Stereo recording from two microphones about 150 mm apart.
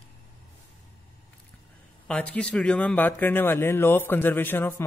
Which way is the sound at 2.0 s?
5° left (ahead or behind).